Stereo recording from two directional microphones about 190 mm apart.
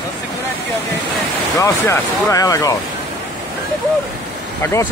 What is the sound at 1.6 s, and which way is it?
Speech, 15° left (ahead or behind).